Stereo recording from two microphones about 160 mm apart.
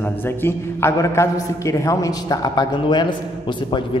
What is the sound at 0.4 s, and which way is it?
A man's voice, 15° left (ahead or behind).